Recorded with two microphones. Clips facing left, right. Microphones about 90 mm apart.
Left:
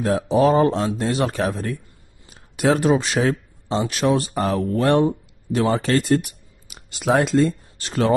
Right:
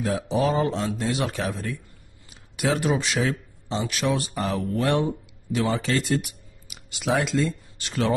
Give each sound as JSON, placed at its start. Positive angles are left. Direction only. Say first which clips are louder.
{"t": 0.0, "sound": "speech", "louder": "left 6 dB", "side_deg": 45}